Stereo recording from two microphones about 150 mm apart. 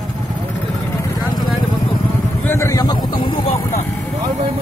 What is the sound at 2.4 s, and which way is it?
Vehicle, 20° left (ahead or behind).